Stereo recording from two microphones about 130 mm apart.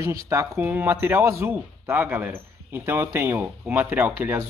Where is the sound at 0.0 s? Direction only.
25° right (ahead or behind).